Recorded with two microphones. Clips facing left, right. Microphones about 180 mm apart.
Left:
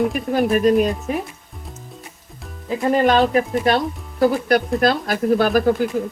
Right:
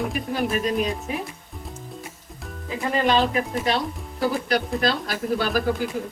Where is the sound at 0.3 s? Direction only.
50° left (ahead or behind).